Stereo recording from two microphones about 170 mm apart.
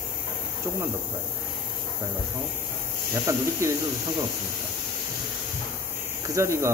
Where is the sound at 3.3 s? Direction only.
15° right (ahead or behind).